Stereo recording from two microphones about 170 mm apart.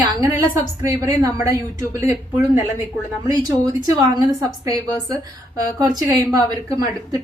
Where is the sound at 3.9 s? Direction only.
20° right (ahead or behind).